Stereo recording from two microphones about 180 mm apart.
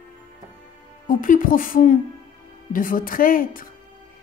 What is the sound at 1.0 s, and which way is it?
Speech, 50° left (ahead or behind).